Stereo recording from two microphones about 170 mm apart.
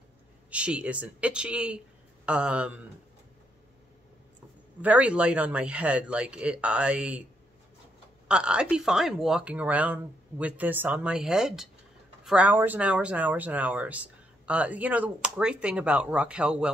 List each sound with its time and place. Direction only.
0.5 s speech: 5° right (ahead or behind)
4.8 s speech: 10° right (ahead or behind)
8.3 s speech: 5° right (ahead or behind)